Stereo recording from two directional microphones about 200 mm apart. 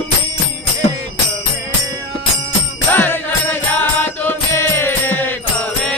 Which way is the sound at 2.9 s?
10° left (ahead or behind).